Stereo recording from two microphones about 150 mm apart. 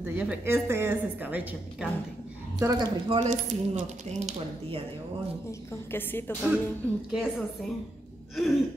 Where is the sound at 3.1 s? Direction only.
50° right (ahead or behind).